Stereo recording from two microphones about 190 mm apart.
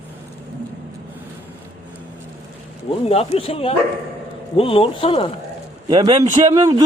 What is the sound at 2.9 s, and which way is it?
Speech, 30° left (ahead or behind).